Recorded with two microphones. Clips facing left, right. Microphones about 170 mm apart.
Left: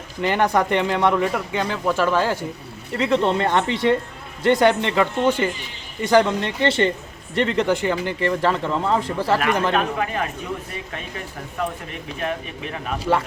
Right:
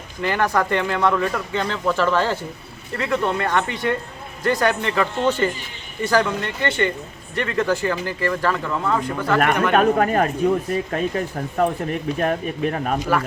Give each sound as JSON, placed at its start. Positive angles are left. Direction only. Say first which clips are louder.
{"t": 0.2, "sound": "speech", "louder": "left 1 dB", "side_deg": 20}
{"t": 5.2, "sound": "speech", "louder": "right 1 dB", "side_deg": 10}
{"t": 6.1, "sound": "speech", "louder": "left 3 dB", "side_deg": 25}
{"t": 9.7, "sound": "speech", "louder": "right 6 dB", "side_deg": -45}
{"t": 13.0, "sound": "speech", "louder": "left 5 dB", "side_deg": 25}